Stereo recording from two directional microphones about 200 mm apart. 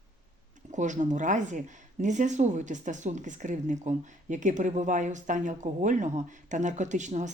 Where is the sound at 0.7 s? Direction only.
40° right (ahead or behind).